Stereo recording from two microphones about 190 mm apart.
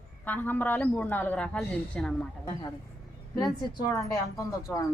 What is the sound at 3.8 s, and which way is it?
A woman's voice, 15° left (ahead or behind).